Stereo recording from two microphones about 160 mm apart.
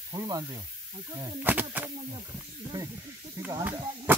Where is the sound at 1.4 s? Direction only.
10° right (ahead or behind).